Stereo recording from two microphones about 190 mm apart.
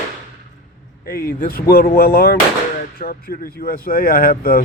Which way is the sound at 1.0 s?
50° left (ahead or behind).